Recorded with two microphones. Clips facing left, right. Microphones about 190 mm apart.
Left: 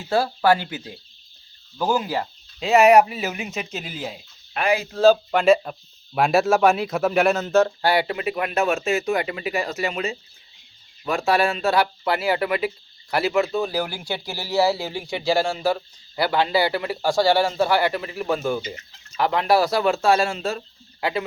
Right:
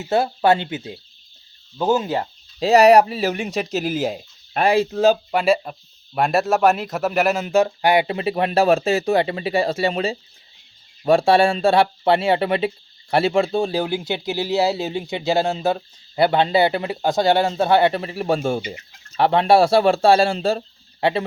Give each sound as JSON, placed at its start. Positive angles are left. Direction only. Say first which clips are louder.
{"t": 0.0, "sound": "speech", "louder": "right 2 dB", "side_deg": -25}
{"t": 5.3, "sound": "speech", "louder": "left 1 dB", "side_deg": -5}